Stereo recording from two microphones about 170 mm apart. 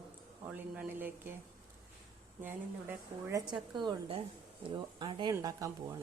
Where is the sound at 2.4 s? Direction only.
10° right (ahead or behind).